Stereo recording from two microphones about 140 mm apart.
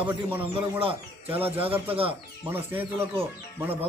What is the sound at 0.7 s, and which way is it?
Speech, 45° right (ahead or behind).